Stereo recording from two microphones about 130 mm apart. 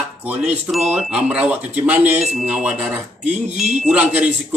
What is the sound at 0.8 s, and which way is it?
A man's voice, 5° right (ahead or behind).